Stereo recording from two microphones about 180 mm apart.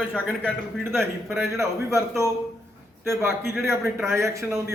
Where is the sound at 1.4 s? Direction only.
15° right (ahead or behind).